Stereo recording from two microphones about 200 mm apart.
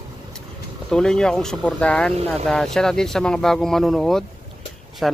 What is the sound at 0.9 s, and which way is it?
A man's voice, 5° left (ahead or behind).